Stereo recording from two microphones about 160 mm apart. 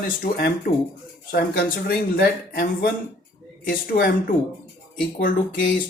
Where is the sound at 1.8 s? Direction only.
70° left (ahead or behind).